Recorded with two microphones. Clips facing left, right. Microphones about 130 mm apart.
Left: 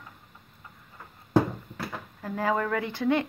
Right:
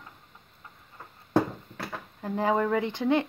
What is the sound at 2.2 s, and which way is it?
Speech, 20° right (ahead or behind).